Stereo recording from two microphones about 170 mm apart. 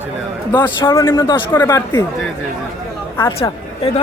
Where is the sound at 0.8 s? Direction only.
25° left (ahead or behind).